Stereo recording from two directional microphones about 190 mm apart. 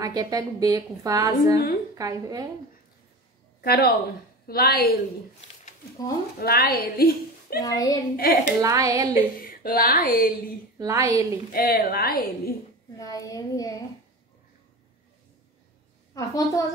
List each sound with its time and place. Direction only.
0.0 s a woman's voice: 20° right (ahead or behind)
3.6 s a woman's voice: 55° left (ahead or behind)
6.4 s a woman's voice: 55° left (ahead or behind)
7.6 s a child's voice: 20° left (ahead or behind)
8.2 s a woman's voice: 50° left (ahead or behind)
8.5 s a woman's voice: 15° right (ahead or behind)
9.4 s speech: 50° left (ahead or behind)
10.8 s a woman's voice: 15° right (ahead or behind)
11.5 s a woman's voice: 50° left (ahead or behind)
13.0 s a child's voice: 20° left (ahead or behind)
16.2 s a child's voice: 20° left (ahead or behind)